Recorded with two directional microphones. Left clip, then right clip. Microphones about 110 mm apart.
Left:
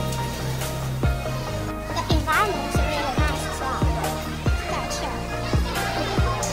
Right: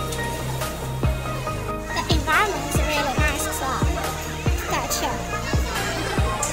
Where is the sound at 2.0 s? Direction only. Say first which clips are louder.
Right 1 dB; centre (ahead or behind).